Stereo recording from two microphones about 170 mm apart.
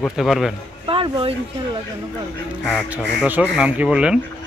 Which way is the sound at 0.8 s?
30° right (ahead or behind).